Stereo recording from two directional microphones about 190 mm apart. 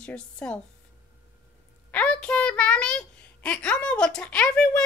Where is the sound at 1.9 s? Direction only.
5° left (ahead or behind).